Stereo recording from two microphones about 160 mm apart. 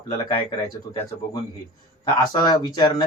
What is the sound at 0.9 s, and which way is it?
Speech, 25° left (ahead or behind).